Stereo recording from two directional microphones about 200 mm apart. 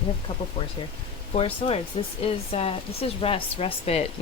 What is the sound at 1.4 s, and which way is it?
Speech, 30° left (ahead or behind).